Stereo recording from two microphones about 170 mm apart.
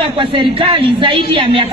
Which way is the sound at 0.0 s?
30° right (ahead or behind).